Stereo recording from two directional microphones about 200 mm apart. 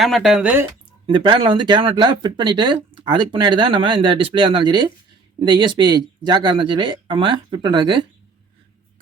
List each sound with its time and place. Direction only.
0.0 s speech: centre (ahead or behind)
1.0 s speech: 25° right (ahead or behind)